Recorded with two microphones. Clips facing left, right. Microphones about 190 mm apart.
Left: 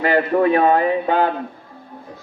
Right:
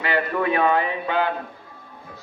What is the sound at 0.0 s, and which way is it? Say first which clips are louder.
A man's voice: left 7 dB; 40° left (ahead or behind).